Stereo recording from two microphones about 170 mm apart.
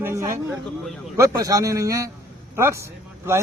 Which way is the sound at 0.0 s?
15° right (ahead or behind).